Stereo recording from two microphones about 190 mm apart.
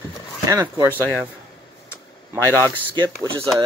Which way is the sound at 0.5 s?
15° right (ahead or behind).